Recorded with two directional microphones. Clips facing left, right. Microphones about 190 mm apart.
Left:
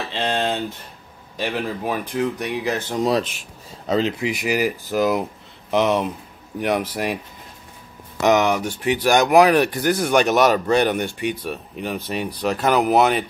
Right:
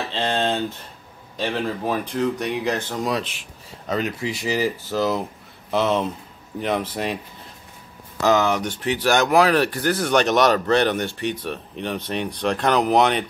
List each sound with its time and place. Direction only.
0.1 s a sound: 10° left (ahead or behind)
1.3 s speech: 10° left (ahead or behind)
3.2 s speech: 45° left (ahead or behind)
3.8 s speech: 30° left (ahead or behind)
4.2 s speech: 15° left (ahead or behind)
8.2 s speech: 20° left (ahead or behind)